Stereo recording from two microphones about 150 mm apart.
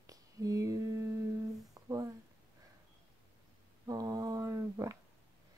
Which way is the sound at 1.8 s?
25° right (ahead or behind).